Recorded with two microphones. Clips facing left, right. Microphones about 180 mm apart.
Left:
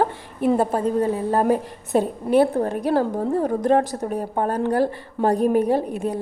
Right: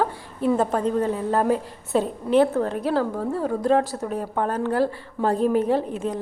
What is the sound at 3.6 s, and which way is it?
A woman's voice, 20° left (ahead or behind).